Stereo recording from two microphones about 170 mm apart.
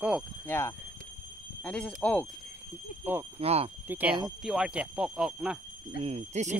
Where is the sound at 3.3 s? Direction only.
35° right (ahead or behind).